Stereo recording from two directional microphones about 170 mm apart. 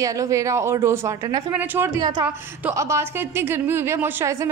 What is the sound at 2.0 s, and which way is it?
A woman's voice, 25° right (ahead or behind).